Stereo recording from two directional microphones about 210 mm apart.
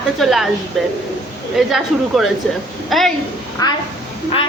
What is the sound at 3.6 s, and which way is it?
Speech, 20° left (ahead or behind).